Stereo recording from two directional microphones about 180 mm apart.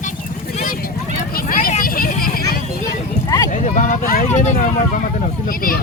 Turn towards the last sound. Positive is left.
turn(degrees=50)  # may be behind; listen again after turning